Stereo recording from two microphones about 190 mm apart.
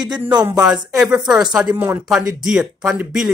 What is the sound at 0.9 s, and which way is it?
Speech, 5° right (ahead or behind).